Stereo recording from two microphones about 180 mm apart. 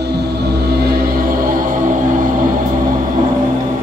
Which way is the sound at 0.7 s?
60° right (ahead or behind).